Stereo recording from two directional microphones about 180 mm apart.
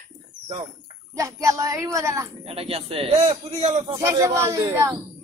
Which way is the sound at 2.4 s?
30° right (ahead or behind).